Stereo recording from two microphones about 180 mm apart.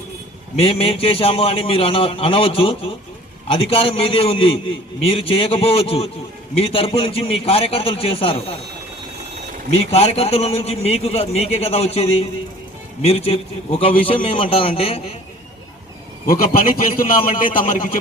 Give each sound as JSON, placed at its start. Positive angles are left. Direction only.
{"t": 0.6, "sound": "a man's voice", "side_deg": 30}
{"t": 9.9, "sound": "a man's voice", "side_deg": 35}
{"t": 16.2, "sound": "a man's voice", "side_deg": 55}